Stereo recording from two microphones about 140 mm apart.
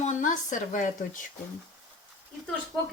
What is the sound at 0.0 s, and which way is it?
Speech, 60° left (ahead or behind).